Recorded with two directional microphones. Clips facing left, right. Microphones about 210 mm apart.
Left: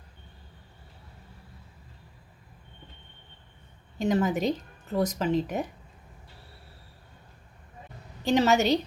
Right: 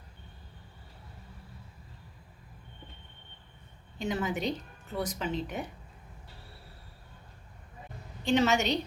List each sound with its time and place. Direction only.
3.9 s a woman's voice: 40° left (ahead or behind)
8.2 s a woman's voice: 40° left (ahead or behind)